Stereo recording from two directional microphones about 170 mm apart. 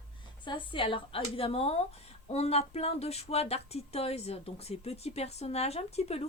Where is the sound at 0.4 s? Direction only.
30° left (ahead or behind).